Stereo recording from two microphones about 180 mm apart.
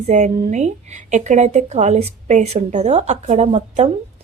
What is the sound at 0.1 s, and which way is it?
A woman's voice, 40° right (ahead or behind).